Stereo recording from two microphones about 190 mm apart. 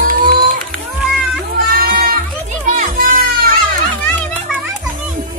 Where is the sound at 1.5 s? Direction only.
50° right (ahead or behind).